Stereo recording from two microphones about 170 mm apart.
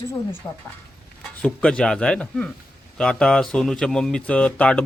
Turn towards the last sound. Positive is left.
turn(degrees=10)  # may be behind; listen again after turning